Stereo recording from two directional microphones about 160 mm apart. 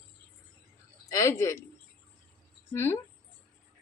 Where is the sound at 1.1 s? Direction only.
20° left (ahead or behind).